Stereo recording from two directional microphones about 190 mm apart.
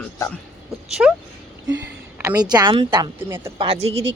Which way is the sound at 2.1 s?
15° right (ahead or behind).